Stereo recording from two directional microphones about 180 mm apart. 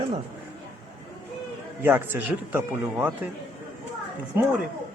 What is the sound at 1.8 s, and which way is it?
Speech, 10° right (ahead or behind).